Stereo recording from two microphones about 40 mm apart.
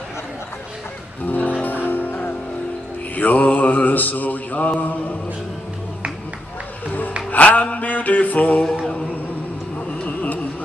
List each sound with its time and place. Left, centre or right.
1.2 s music: left
3.2 s mantra: left
7.2 s a sound: left
10.0 s music: left